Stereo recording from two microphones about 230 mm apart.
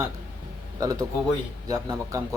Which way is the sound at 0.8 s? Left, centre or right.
Centre.